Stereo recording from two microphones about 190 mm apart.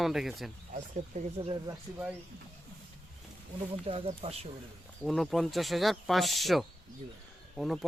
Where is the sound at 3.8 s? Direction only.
30° right (ahead or behind).